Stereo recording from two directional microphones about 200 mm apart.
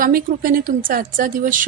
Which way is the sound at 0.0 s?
45° right (ahead or behind).